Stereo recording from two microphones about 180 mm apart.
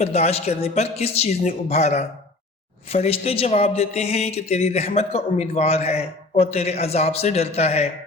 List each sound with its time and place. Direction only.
0.0 s speech: 35° left (ahead or behind)